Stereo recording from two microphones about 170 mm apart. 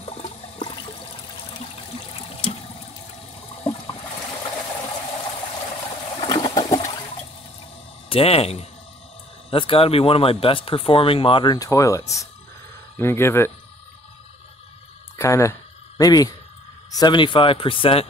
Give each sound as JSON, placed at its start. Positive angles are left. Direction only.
{"t": 0.0, "sound": "toilet flush", "side_deg": 35}
{"t": 2.0, "sound": "water", "side_deg": 35}
{"t": 6.2, "sound": "toilet flush", "side_deg": 25}
{"t": 8.1, "sound": "speech", "side_deg": 35}
{"t": 15.1, "sound": "speech", "side_deg": 15}